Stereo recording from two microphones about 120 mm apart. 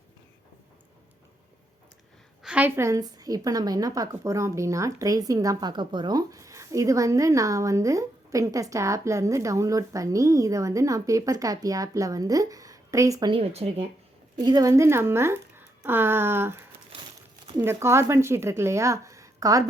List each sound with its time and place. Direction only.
2.4 s a woman's voice: 10° right (ahead or behind); by 13.3 s 30° right (ahead or behind)
13.3 s speech: 55° right (ahead or behind)
14.4 s a woman's voice: 30° right (ahead or behind)
17.6 s a woman's voice: 25° right (ahead or behind)